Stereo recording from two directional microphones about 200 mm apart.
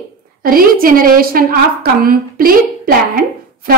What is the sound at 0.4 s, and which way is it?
A woman's voice, 45° right (ahead or behind).